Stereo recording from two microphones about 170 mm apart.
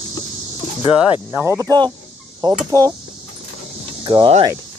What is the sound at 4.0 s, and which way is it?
Speech, 30° right (ahead or behind).